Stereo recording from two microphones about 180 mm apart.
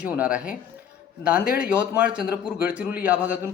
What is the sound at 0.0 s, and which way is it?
Speech, 10° right (ahead or behind).